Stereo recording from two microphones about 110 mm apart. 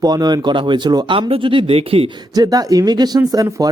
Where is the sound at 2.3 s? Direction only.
35° right (ahead or behind).